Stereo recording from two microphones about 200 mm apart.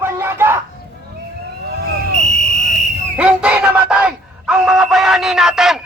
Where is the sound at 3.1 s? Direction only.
5° right (ahead or behind).